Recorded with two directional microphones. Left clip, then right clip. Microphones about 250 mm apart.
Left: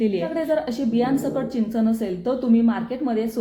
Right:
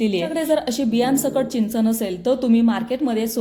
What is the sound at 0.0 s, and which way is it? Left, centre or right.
A woman's voice, right.